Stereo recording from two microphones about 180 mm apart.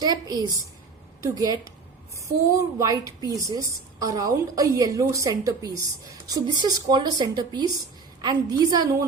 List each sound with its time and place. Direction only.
0.0 s a woman's voice: 20° right (ahead or behind)